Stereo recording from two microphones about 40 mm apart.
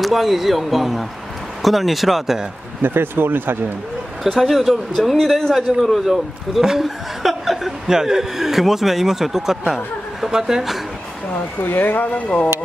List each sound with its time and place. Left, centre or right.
0.0 s speech: centre
2.8 s speech: right
4.2 s speech: centre
11.6 s speech: left